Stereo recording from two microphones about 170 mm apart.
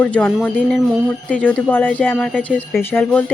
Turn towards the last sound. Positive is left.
turn(degrees=10)  # may be behind; listen again after turning